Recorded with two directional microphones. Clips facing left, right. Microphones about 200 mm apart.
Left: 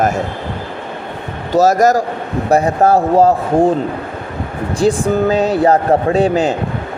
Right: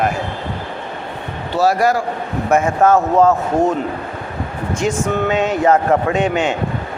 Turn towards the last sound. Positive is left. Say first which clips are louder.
# left 4 dB
turn(degrees=35)  # may be behind; listen again after turning